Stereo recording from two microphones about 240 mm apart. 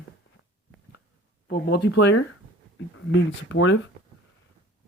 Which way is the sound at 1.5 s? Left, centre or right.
Left.